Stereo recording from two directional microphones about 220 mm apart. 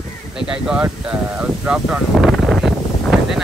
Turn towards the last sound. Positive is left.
turn(degrees=0)  # may be behind; listen again after turning